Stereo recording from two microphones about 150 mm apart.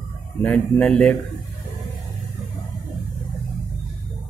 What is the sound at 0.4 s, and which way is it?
Speech, 5° left (ahead or behind).